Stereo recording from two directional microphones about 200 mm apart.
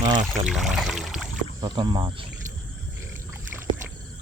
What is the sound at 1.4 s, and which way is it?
Speech, 20° right (ahead or behind).